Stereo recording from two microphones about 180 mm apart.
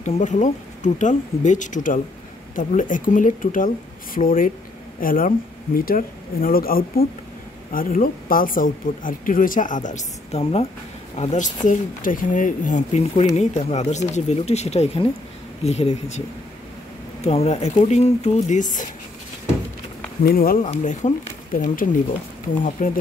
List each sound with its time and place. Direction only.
0.0 s speech: 45° left (ahead or behind)
17.2 s speech: 35° left (ahead or behind)
20.2 s speech: 55° left (ahead or behind)
20.6 s speech: 40° left (ahead or behind)